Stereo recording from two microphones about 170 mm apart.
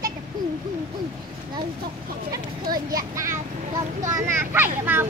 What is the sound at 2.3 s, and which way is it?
A child's voice, 20° right (ahead or behind).